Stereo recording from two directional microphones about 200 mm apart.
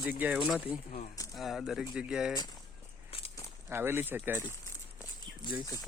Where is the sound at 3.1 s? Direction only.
30° left (ahead or behind).